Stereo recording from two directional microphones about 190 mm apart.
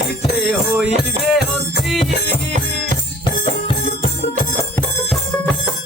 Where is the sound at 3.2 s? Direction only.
25° left (ahead or behind).